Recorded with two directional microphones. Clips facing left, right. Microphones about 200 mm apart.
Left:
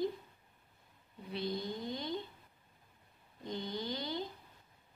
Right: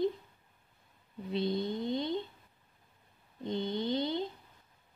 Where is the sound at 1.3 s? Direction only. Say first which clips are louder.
Right 6 dB; 25° right (ahead or behind).